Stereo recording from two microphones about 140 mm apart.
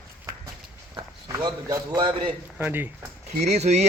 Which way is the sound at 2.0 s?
35° right (ahead or behind).